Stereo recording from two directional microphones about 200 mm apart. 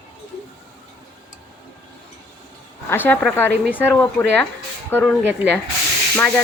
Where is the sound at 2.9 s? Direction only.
10° left (ahead or behind).